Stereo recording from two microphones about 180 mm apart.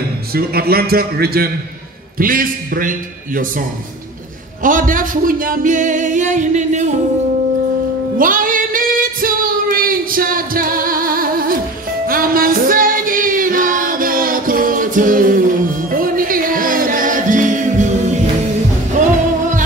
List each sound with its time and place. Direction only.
0.3 s a man's voice: 55° right (ahead or behind)
2.1 s music: 50° right (ahead or behind)
4.6 s music: 50° right (ahead or behind)
8.2 s female singing: 50° right (ahead or behind)
12.1 s music: 55° right (ahead or behind)